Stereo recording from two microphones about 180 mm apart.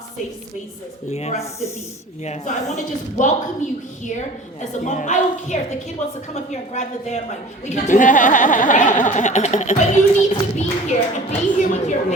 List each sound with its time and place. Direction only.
1.1 s a woman's voice: 35° left (ahead or behind)